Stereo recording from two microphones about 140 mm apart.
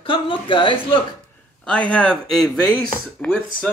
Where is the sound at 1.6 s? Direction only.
10° left (ahead or behind).